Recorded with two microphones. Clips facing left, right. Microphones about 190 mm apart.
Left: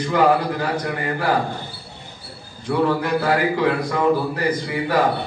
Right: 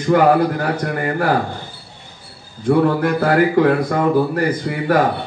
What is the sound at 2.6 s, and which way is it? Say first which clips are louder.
A man's voice: right 5 dB; 55° right (ahead or behind).